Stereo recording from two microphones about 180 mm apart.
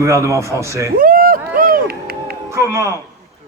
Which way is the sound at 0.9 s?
55° right (ahead or behind).